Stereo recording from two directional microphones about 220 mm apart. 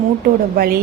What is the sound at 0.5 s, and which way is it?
Speech, 45° right (ahead or behind).